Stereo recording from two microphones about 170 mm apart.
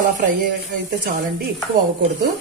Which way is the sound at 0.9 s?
60° right (ahead or behind).